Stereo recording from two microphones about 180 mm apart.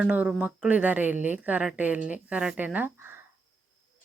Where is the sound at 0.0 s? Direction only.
5° right (ahead or behind).